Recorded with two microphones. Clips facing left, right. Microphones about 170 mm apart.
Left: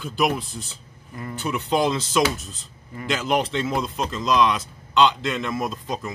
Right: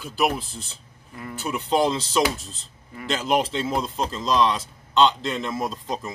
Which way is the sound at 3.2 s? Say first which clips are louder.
Right 1 dB; centre (ahead or behind).